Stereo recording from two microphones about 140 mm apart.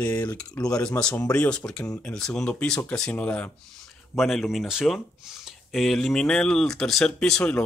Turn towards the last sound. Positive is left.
turn(degrees=5)  # may be behind; listen again after turning